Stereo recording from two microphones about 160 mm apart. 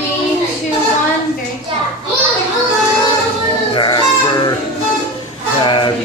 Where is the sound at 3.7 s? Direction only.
30° left (ahead or behind).